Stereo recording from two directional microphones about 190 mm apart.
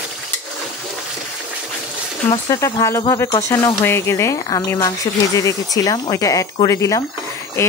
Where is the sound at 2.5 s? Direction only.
15° left (ahead or behind).